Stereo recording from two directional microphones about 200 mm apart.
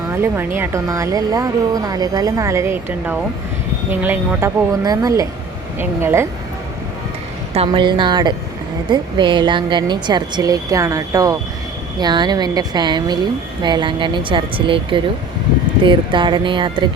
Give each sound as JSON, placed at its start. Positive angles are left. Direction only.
{"t": 0.1, "sound": "speech", "side_deg": -10}
{"t": 7.5, "sound": "speech", "side_deg": -25}